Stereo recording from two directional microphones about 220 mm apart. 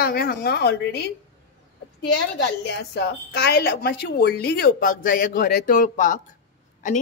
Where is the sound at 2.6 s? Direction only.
50° left (ahead or behind).